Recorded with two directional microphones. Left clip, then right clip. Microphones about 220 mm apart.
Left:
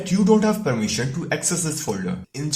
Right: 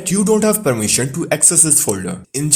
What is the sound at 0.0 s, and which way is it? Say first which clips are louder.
Speech: right 4 dB; 50° right (ahead or behind).